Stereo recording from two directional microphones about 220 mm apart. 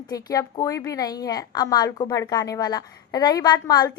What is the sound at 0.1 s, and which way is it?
A woman's voice, 15° left (ahead or behind).